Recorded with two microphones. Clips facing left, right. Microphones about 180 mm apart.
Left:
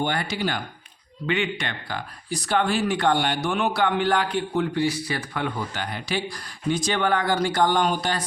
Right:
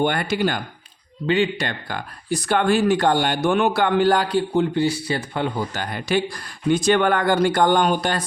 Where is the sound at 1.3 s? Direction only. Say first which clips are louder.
Right 5 dB; 35° right (ahead or behind).